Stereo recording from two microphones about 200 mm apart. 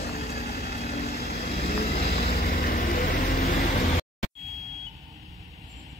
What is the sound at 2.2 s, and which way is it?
Vehicle, 45° left (ahead or behind).